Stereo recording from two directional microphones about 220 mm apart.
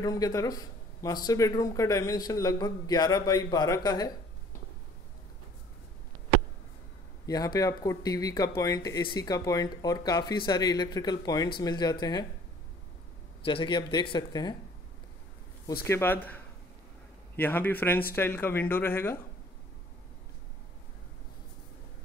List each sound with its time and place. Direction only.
0.0 s speech: 15° left (ahead or behind)
7.2 s speech: 15° left (ahead or behind)
13.4 s speech: 25° left (ahead or behind)
15.9 s speech: 10° left (ahead or behind)